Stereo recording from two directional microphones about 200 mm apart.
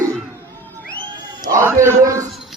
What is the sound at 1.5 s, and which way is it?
Speech, 15° right (ahead or behind).